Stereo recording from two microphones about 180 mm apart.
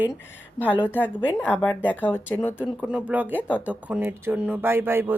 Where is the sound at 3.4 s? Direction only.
10° left (ahead or behind).